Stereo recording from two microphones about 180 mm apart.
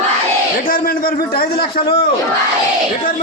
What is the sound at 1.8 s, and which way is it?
Speech, 30° left (ahead or behind).